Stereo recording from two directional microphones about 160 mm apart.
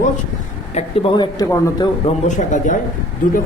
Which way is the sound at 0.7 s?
40° left (ahead or behind).